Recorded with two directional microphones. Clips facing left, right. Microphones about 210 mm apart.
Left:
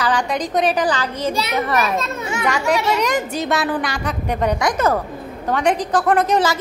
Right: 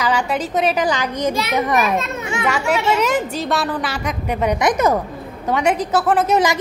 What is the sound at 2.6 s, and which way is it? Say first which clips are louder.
Speech: even; 35° left (ahead or behind).